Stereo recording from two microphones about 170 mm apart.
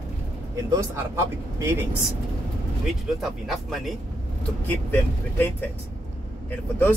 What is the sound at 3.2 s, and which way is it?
Speech, centre (ahead or behind).